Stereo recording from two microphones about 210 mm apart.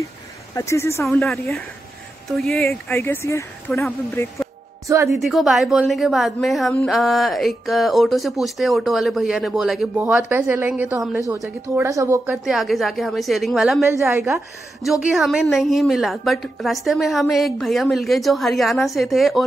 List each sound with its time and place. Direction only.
0.6 s speech: 15° left (ahead or behind)
1.0 s a woman's voice: centre (ahead or behind)
4.8 s speech: 15° right (ahead or behind)
5.2 s a woman's voice: centre (ahead or behind)
11.1 s speech: 15° right (ahead or behind)
12.4 s a woman's voice: centre (ahead or behind)
13.8 s speech: 15° right (ahead or behind)
14.9 s a woman's voice: centre (ahead or behind)